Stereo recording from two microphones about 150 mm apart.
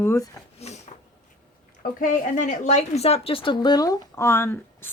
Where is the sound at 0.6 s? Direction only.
45° left (ahead or behind).